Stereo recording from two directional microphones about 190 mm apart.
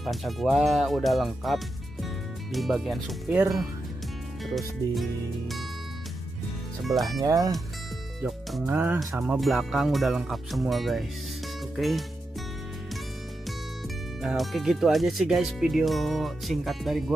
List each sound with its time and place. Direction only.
0.0 s speech: centre (ahead or behind)
6.8 s speech: centre (ahead or behind)
7.2 s speech: 20° right (ahead or behind)
8.2 s speech: centre (ahead or behind)
13.5 s speech: centre (ahead or behind)